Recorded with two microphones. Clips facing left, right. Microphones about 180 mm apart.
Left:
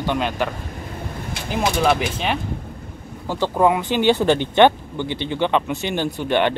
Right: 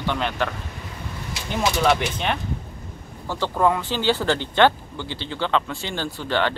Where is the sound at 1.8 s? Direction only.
5° left (ahead or behind).